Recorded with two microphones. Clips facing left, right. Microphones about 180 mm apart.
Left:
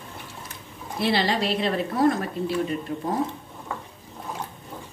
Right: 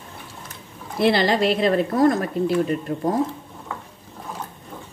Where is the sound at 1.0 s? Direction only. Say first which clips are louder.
Right 5 dB; 50° right (ahead or behind).